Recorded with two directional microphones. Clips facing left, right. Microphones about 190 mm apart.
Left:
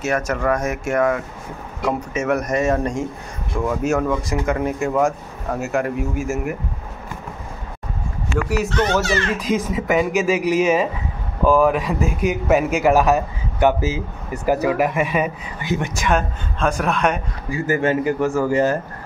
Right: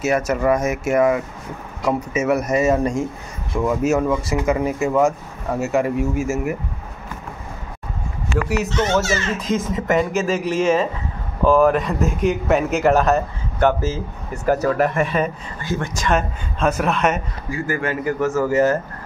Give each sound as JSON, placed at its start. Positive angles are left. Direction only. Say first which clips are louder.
{"t": 0.0, "sound": "speech", "louder": "right 2 dB", "side_deg": -10}
{"t": 8.5, "sound": "speech", "louder": "left 1 dB", "side_deg": 0}
{"t": 15.6, "sound": "a man's voice", "louder": "left 2 dB", "side_deg": 20}
{"t": 15.9, "sound": "speech", "louder": "right 1 dB", "side_deg": 5}
{"t": 16.2, "sound": "speech", "louder": "even", "side_deg": -5}
{"t": 17.6, "sound": "a man's voice", "louder": "left 5 dB", "side_deg": 20}